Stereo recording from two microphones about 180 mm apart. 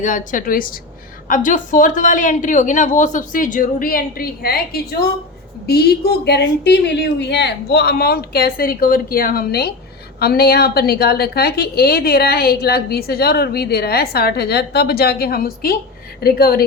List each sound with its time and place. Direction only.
0.0 s a woman's voice: 45° left (ahead or behind)